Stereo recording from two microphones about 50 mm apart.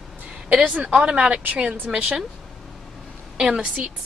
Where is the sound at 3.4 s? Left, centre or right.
Right.